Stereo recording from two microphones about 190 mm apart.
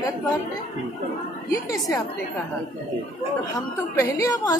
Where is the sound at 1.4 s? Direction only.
15° left (ahead or behind).